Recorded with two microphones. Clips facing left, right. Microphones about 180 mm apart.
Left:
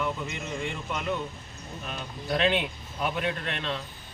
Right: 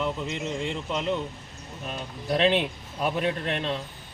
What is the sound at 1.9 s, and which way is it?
A man's voice, 30° right (ahead or behind).